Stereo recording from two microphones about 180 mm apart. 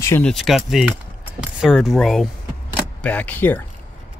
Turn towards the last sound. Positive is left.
turn(degrees=10)  # may be behind; listen again after turning